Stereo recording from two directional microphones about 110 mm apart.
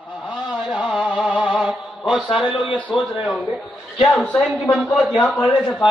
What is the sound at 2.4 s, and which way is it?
Speech, 45° left (ahead or behind).